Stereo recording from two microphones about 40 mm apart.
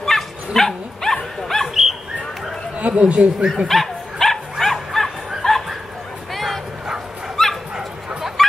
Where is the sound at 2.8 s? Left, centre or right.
Right.